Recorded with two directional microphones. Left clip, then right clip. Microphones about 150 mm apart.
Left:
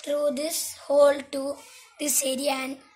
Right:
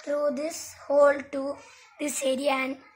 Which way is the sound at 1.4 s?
10° right (ahead or behind).